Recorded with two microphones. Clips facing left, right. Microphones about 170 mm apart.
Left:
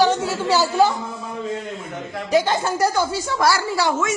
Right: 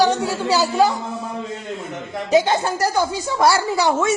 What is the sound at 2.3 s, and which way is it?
Speech, 20° right (ahead or behind).